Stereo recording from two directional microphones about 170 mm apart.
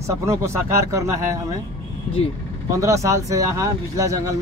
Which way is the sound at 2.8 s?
20° right (ahead or behind).